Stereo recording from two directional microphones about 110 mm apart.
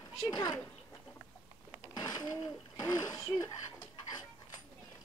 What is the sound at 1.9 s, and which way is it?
Speech, 40° left (ahead or behind).